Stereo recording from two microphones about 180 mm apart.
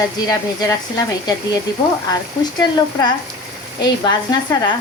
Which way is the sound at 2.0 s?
25° left (ahead or behind).